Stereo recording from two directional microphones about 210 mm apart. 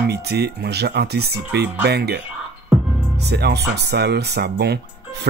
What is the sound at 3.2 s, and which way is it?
Speech, 50° right (ahead or behind).